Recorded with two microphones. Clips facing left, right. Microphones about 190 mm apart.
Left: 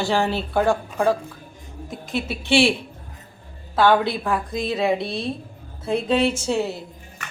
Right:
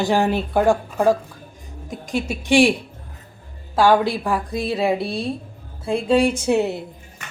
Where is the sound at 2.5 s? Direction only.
15° right (ahead or behind).